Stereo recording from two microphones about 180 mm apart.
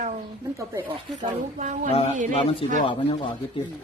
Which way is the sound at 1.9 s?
30° left (ahead or behind).